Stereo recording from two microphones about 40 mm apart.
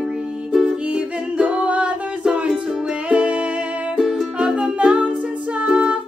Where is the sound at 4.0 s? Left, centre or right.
Centre; by 5.1 s right.